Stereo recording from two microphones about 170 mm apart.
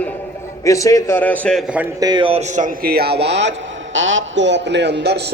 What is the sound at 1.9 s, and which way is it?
A man's voice, 25° right (ahead or behind).